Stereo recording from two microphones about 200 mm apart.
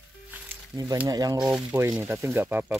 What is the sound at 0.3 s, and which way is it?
Music, 15° right (ahead or behind).